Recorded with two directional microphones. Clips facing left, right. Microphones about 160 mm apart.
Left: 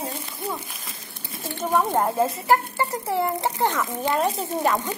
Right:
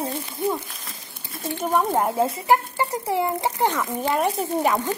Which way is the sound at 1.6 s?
10° right (ahead or behind).